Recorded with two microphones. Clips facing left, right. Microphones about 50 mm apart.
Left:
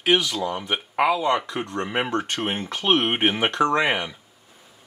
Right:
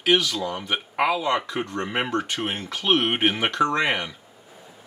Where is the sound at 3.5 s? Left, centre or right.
Left.